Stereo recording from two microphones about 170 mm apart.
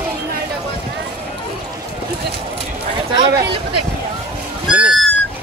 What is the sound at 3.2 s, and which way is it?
Speech, 80° right.